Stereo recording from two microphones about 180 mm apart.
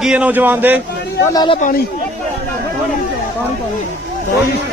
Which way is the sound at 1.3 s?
25° left (ahead or behind).